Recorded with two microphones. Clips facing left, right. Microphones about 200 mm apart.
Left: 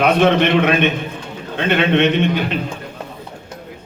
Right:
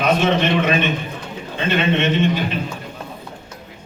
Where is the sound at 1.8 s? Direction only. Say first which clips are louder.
Left 3 dB; 60° left (ahead or behind).